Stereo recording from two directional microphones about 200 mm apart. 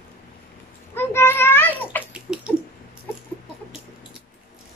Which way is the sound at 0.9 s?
10° left (ahead or behind).